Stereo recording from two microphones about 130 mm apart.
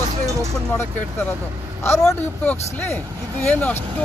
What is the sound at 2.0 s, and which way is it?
Speech, 10° left (ahead or behind).